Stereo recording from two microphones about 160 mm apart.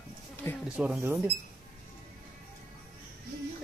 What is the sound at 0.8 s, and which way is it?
Speech, 5° right (ahead or behind).